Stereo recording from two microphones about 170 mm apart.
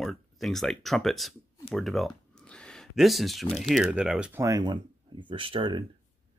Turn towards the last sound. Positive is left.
turn(degrees=-30)  # may be behind; listen again after turning